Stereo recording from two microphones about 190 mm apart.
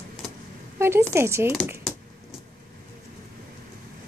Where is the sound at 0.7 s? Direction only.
15° right (ahead or behind).